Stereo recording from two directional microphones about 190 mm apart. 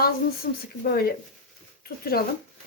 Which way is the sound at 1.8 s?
55° left (ahead or behind).